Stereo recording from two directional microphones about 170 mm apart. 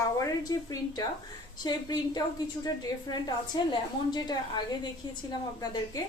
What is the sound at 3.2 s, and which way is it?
A woman's voice, 25° left (ahead or behind).